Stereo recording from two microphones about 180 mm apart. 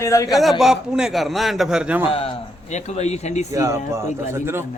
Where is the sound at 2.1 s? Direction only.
35° left (ahead or behind).